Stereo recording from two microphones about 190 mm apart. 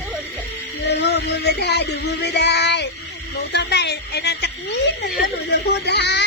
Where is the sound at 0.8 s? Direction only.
60° left (ahead or behind).